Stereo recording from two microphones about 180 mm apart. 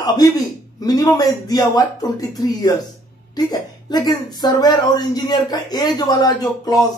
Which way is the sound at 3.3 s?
20° left (ahead or behind).